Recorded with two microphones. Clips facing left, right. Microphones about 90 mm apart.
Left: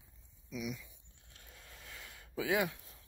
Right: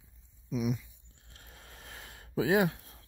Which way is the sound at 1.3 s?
50° right (ahead or behind).